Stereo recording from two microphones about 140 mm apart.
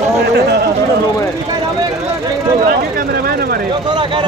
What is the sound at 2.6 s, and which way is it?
Speech, 90° right.